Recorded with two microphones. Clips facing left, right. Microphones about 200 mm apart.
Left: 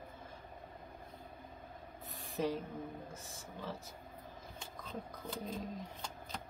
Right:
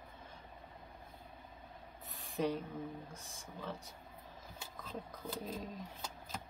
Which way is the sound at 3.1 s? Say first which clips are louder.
Left 2 dB; centre (ahead or behind).